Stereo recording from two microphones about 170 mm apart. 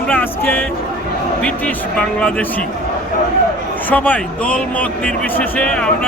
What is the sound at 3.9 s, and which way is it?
Speech, 10° left (ahead or behind).